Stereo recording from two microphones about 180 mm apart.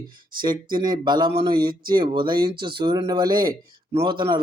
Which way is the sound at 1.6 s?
55° right (ahead or behind).